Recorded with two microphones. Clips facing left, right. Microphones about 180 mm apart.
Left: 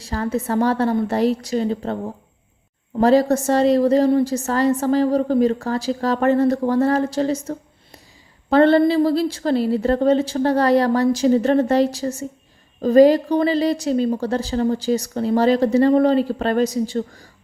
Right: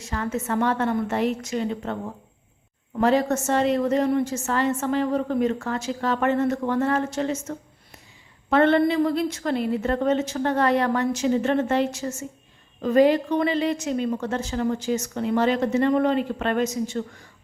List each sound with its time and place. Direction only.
0.0 s a woman's voice: 35° left (ahead or behind)
3.0 s a woman's voice: 35° left (ahead or behind)